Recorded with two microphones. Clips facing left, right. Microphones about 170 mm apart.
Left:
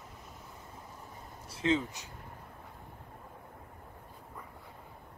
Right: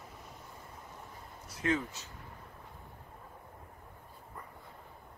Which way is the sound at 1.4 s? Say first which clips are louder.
Left 3 dB; 25° left (ahead or behind).